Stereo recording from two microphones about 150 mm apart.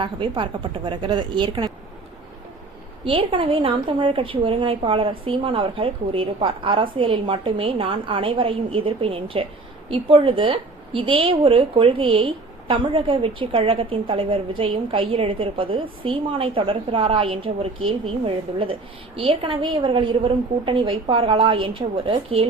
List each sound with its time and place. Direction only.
0.0 s a woman's voice: 35° right (ahead or behind)
3.0 s a woman's voice: 35° right (ahead or behind)